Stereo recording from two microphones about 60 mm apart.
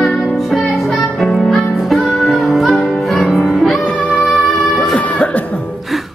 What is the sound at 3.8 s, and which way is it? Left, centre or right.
Music, left.